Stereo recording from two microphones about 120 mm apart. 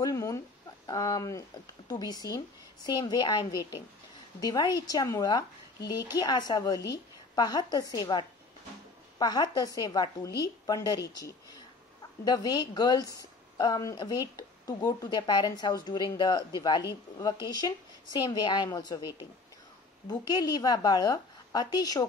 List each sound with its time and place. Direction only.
0.0 s chicken: 25° left (ahead or behind)
0.8 s a woman's voice: 30° left (ahead or behind)